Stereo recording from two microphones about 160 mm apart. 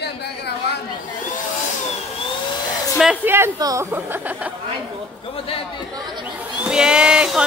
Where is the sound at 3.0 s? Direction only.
10° right (ahead or behind).